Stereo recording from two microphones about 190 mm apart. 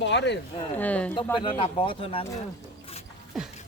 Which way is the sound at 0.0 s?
65° left (ahead or behind).